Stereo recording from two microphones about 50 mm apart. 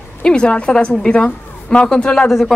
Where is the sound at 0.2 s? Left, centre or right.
Centre.